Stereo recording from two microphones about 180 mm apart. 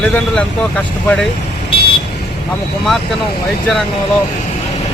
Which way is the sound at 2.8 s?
Centre (ahead or behind).